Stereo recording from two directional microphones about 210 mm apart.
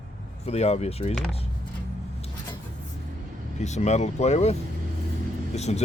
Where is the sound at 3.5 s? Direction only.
35° left (ahead or behind).